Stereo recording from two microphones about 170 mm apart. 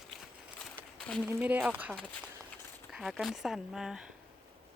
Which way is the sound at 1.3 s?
10° right (ahead or behind).